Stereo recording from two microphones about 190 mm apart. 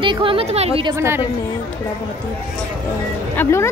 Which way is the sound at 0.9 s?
15° right (ahead or behind).